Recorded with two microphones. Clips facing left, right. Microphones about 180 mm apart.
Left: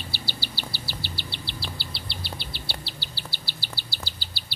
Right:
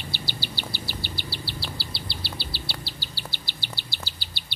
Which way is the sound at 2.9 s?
15° right (ahead or behind).